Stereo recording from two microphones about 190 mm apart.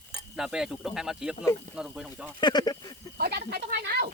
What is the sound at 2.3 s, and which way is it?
Speech, 25° left (ahead or behind).